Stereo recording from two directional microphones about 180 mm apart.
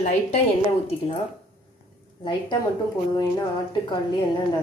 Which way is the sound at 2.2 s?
25° left (ahead or behind).